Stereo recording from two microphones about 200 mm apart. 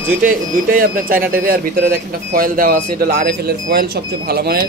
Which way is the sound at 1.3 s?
45° right (ahead or behind).